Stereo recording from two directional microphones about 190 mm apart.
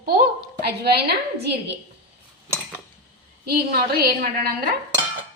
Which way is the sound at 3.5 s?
55° right (ahead or behind).